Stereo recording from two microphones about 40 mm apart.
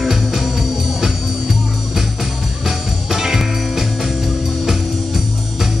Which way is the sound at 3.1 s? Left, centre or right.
Centre.